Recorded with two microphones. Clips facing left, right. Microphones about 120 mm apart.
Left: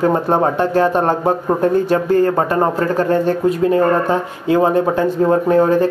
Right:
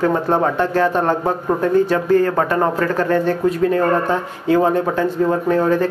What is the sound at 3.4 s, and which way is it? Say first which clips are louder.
Speech: left 3 dB; 20° left (ahead or behind).